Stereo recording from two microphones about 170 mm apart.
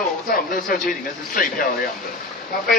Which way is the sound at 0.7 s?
55° left (ahead or behind).